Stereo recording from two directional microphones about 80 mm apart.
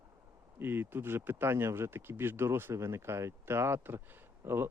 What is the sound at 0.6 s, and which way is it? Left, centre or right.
Speech, right.